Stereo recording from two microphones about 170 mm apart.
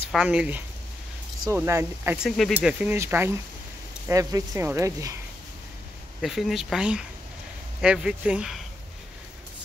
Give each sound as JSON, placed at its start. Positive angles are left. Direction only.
{"t": 0.1, "sound": "speech", "side_deg": -5}
{"t": 2.2, "sound": "speech", "side_deg": 0}
{"t": 2.8, "sound": "speech", "side_deg": -10}
{"t": 6.2, "sound": "speech", "side_deg": 0}